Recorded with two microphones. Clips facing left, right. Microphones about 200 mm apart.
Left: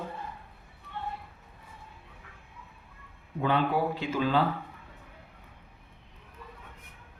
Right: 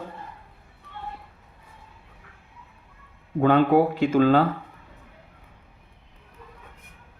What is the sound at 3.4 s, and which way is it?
Speech, 55° right (ahead or behind).